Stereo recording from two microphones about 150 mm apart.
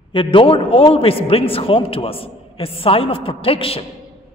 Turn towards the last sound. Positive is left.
turn(degrees=40)  # may be behind; listen again after turning